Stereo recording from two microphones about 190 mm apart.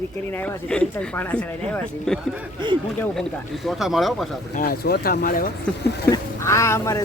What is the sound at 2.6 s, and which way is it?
Speech, 25° right (ahead or behind).